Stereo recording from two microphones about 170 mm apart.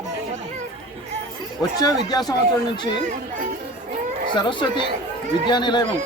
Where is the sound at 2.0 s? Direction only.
25° left (ahead or behind).